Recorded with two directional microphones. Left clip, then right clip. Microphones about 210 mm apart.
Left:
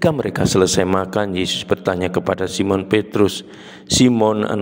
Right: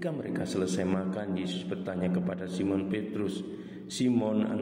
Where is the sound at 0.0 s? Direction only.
50° left (ahead or behind).